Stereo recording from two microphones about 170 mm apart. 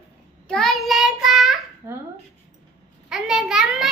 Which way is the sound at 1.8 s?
15° right (ahead or behind).